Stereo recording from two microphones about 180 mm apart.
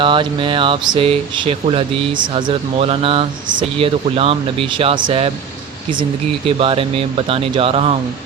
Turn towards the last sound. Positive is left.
turn(degrees=-30)  # may be behind; listen again after turning